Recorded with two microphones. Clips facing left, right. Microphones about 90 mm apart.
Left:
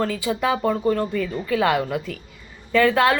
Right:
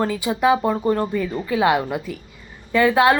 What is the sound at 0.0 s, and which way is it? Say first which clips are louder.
Speech: right 3 dB; 20° right (ahead or behind).